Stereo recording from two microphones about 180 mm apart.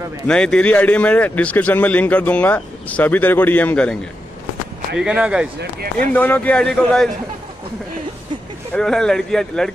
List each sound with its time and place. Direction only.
0.3 s speech: 5° left (ahead or behind)
4.9 s speech: 5° right (ahead or behind)
5.6 s speech: 60° right (ahead or behind)
6.1 s speech: 10° left (ahead or behind)
8.7 s speech: 5° left (ahead or behind)